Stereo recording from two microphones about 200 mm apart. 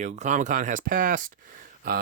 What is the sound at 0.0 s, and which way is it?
Speech, 35° right (ahead or behind).